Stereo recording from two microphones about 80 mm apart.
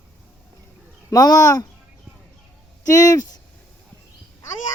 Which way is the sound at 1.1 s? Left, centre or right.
Left.